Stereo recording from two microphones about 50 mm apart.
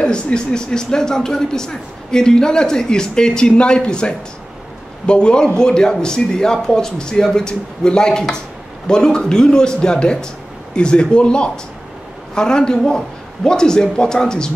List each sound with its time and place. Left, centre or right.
0.0 s speech: centre